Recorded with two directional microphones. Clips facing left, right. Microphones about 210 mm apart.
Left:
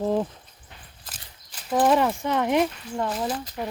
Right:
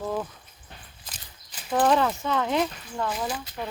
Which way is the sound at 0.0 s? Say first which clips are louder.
Left 6 dB; 30° left (ahead or behind).